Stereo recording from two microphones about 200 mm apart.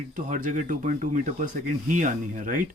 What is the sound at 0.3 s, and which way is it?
Speech, 40° right (ahead or behind).